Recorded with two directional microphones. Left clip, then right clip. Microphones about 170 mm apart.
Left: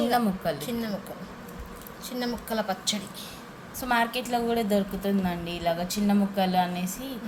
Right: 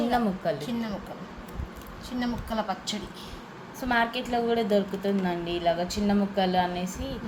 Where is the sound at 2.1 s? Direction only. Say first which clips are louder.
Left 1 dB; 25° left (ahead or behind).